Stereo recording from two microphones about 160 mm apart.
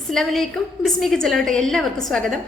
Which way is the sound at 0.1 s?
Centre (ahead or behind).